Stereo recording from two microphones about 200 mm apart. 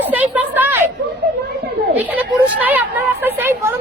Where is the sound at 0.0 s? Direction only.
10° right (ahead or behind).